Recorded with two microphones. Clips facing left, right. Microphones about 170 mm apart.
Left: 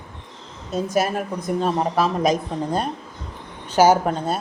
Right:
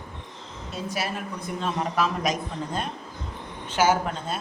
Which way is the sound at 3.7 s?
40° left (ahead or behind).